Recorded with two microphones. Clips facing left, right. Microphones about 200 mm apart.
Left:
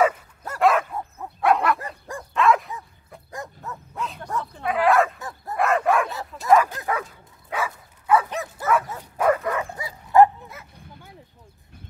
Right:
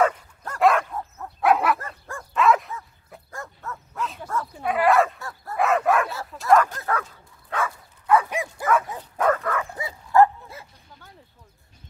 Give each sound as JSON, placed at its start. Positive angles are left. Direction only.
{"t": 0.0, "sound": "dog", "side_deg": 10}
{"t": 3.3, "sound": "bow-wow", "side_deg": 15}
{"t": 3.9, "sound": "bow-wow", "side_deg": 0}
{"t": 5.2, "sound": "bow-wow", "side_deg": 20}
{"t": 5.6, "sound": "bow-wow", "side_deg": 0}
{"t": 6.8, "sound": "bow-wow", "side_deg": 15}
{"t": 8.3, "sound": "dog", "side_deg": -10}
{"t": 9.0, "sound": "dog", "side_deg": 10}